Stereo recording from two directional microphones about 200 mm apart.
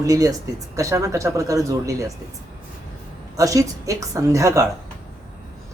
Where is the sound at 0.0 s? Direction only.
15° right (ahead or behind).